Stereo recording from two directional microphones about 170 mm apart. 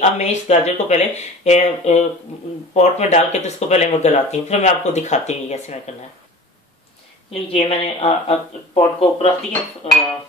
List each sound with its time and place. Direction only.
0.0 s speech: 40° left (ahead or behind)
7.2 s speech: 35° left (ahead or behind)